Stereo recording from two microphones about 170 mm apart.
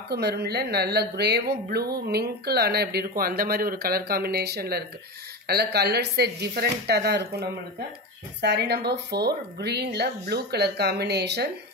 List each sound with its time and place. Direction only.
0.1 s speech: 70° right (ahead or behind)